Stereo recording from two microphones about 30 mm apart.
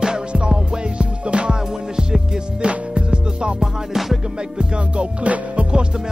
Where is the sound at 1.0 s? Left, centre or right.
Right.